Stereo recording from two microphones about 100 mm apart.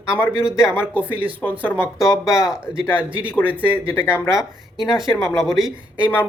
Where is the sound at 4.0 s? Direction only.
25° left (ahead or behind).